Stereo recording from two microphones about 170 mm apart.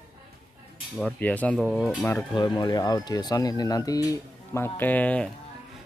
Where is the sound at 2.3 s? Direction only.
25° left (ahead or behind); by 5.3 s 10° left (ahead or behind).